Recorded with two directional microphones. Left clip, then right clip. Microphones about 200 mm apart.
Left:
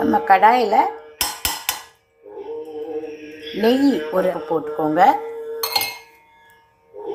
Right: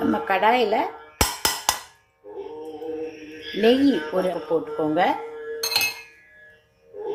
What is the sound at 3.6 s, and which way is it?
Speech, 5° left (ahead or behind).